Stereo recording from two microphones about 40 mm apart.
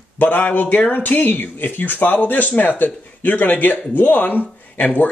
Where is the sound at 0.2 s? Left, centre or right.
Left.